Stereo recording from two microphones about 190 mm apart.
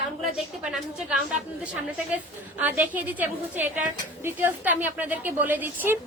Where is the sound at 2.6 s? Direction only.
10° right (ahead or behind).